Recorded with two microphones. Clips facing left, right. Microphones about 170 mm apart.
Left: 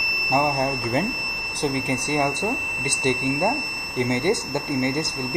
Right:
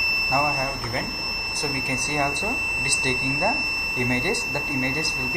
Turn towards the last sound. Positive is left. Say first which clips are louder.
# left 4 dB
turn(degrees=20)  # may be behind; listen again after turning